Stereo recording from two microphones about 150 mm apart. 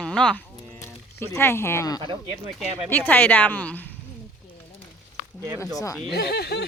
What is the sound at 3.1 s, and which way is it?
Speech, 10° left (ahead or behind).